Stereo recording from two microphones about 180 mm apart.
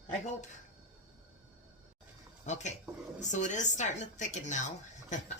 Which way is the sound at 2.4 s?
40° left (ahead or behind).